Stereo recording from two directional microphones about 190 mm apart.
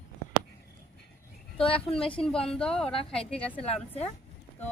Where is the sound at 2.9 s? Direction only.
30° left (ahead or behind).